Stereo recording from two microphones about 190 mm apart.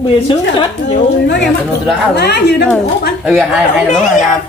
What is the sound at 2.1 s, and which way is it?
Speech, 60° left (ahead or behind).